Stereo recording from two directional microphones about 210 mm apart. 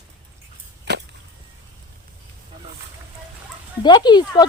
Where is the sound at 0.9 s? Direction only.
55° right (ahead or behind).